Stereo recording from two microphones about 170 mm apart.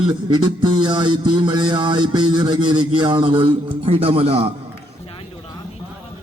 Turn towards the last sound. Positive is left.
turn(degrees=-35)  # may be behind; listen again after turning